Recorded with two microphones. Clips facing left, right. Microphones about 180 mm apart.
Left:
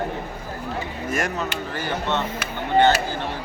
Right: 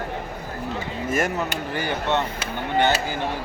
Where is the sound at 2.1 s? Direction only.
15° right (ahead or behind).